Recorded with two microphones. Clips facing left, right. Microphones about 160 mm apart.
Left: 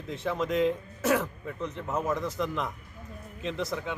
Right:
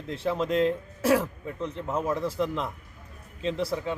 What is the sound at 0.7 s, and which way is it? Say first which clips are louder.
Speech: right 3 dB; 5° right (ahead or behind).